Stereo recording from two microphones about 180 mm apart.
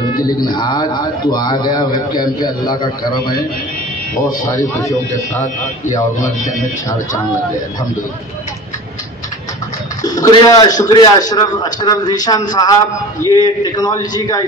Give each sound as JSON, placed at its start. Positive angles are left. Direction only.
{"t": 0.5, "sound": "a man's voice", "side_deg": 25}
{"t": 10.0, "sound": "a man's voice", "side_deg": 20}